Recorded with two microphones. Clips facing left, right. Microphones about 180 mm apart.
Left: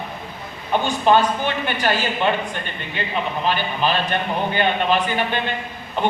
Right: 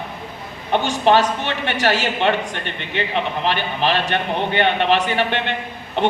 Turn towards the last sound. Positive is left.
turn(degrees=-75)  # may be behind; listen again after turning